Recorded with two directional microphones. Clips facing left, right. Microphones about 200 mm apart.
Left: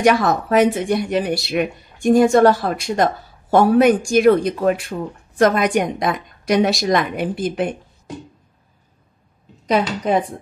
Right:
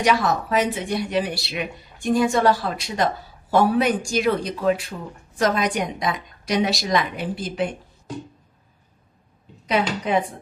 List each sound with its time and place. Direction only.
0.0 s speech: 50° left (ahead or behind)
9.7 s a woman's voice: 40° left (ahead or behind)